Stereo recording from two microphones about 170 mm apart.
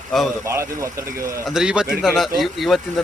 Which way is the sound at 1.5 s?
5° right (ahead or behind).